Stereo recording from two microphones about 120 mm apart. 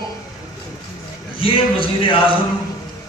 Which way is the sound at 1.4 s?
45° left (ahead or behind).